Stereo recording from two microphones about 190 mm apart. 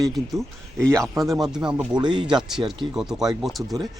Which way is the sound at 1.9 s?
25° right (ahead or behind).